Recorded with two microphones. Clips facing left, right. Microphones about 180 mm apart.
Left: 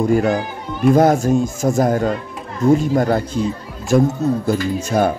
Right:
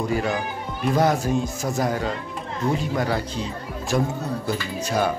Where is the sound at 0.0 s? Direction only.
45° left (ahead or behind).